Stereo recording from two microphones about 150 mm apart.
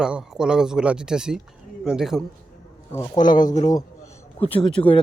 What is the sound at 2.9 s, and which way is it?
Speech, 25° left (ahead or behind).